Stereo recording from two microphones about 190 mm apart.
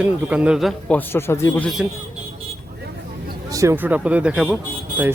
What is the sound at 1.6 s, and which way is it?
Speech, centre (ahead or behind).